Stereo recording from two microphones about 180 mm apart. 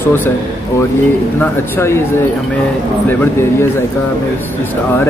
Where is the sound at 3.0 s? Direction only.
10° left (ahead or behind).